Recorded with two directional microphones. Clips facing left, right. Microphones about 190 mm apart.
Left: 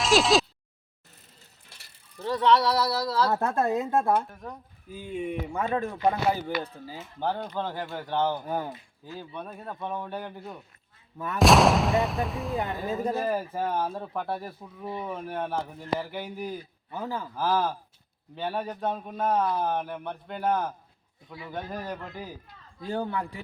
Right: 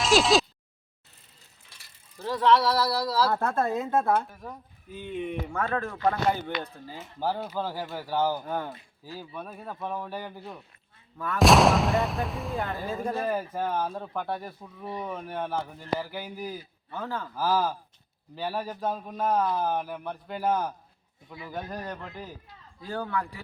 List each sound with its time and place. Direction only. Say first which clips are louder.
0.0 s a sound: even; centre (ahead or behind)
2.1 s speech: even; centre (ahead or behind)
7.2 s speech: even; 5° right (ahead or behind)
8.4 s speech: left 1 dB; 10° left (ahead or behind)
9.1 s speech: left 1 dB; 5° right (ahead or behind)
16.9 s speech: left 1 dB; 10° left (ahead or behind)
17.3 s speech: even; centre (ahead or behind)
22.8 s a man's voice: left 1 dB; 25° left (ahead or behind)